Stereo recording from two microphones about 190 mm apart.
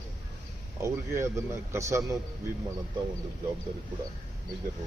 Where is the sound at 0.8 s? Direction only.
15° right (ahead or behind).